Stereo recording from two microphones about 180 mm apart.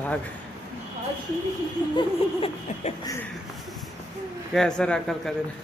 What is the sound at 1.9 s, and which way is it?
A man's voice, 30° left (ahead or behind).